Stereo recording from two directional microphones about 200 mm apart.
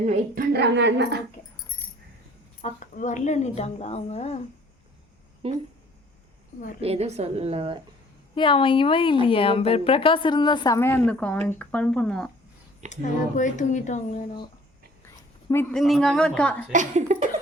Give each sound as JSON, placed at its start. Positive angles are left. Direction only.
{"t": 0.0, "sound": "a woman's voice", "side_deg": -35}
{"t": 0.5, "sound": "a woman's voice", "side_deg": -60}
{"t": 2.6, "sound": "a woman's voice", "side_deg": 40}
{"t": 5.4, "sound": "speech", "side_deg": -30}
{"t": 6.8, "sound": "a woman's voice", "side_deg": -30}
{"t": 8.4, "sound": "a woman's voice", "side_deg": 25}
{"t": 12.9, "sound": "a woman's voice", "side_deg": 40}
{"t": 15.7, "sound": "a woman's voice", "side_deg": 0}
{"t": 16.7, "sound": "a woman's voice", "side_deg": -35}